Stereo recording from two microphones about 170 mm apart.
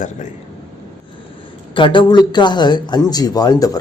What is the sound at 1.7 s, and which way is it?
Speech, 30° left (ahead or behind).